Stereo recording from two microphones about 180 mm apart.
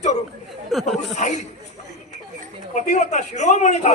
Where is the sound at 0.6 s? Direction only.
Centre (ahead or behind).